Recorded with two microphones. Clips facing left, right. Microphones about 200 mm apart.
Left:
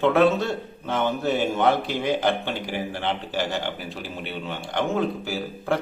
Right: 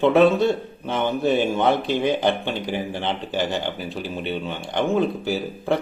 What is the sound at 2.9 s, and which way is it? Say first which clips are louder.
A man's voice: right 2 dB; 20° right (ahead or behind).